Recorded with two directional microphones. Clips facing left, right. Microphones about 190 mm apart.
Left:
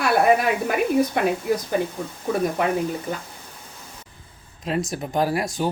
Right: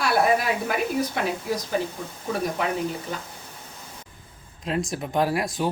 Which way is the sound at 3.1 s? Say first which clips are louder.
Left 3 dB; 50° left (ahead or behind).